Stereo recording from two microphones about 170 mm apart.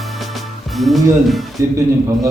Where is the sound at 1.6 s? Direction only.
15° right (ahead or behind).